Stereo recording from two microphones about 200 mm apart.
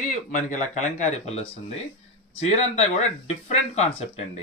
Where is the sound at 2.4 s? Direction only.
35° left (ahead or behind).